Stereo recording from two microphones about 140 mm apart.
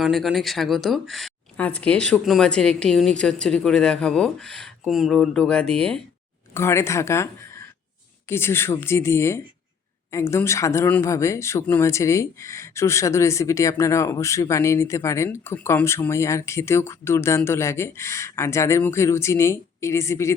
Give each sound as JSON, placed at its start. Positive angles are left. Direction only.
{"t": 0.0, "sound": "speech", "side_deg": 0}
{"t": 6.5, "sound": "speech", "side_deg": 20}